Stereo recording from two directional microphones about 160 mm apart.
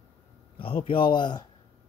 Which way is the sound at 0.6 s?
35° left (ahead or behind).